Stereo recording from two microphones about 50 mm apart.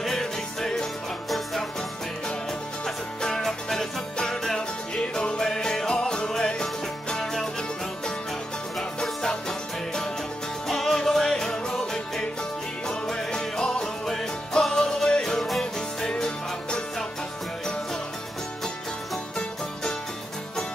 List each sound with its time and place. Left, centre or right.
0.0 s music: centre
3.2 s music: centre
8.7 s music: centre
15.3 s music: centre
15.6 s music: centre